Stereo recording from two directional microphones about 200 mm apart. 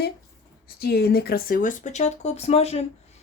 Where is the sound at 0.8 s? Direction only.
50° left (ahead or behind).